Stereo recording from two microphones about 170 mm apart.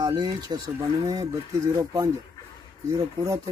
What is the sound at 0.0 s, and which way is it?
Speech, 25° right (ahead or behind).